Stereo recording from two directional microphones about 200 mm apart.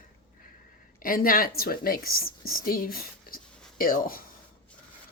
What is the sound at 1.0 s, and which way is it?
Speech, 45° left (ahead or behind).